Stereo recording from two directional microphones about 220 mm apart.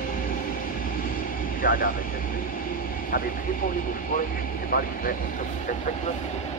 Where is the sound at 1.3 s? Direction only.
40° left (ahead or behind).